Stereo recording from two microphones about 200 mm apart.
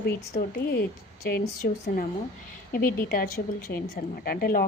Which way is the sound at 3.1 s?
45° left (ahead or behind).